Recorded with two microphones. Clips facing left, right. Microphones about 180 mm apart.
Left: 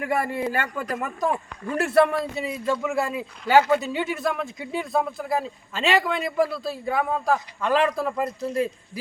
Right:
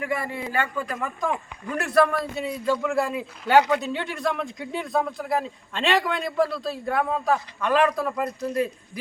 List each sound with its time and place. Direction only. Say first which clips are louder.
0.0 s a man's voice: left 4 dB; 45° left (ahead or behind); by 2.0 s 30° left (ahead or behind)
2.3 s speech: right 1 dB; 5° left (ahead or behind)